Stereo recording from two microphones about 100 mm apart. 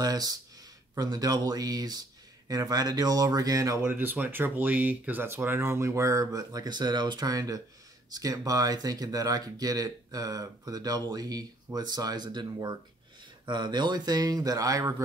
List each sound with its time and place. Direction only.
0.0 s speech: 40° right (ahead or behind)
3.8 s speech: 20° right (ahead or behind)